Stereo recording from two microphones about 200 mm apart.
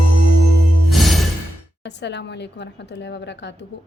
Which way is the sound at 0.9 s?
Centre (ahead or behind).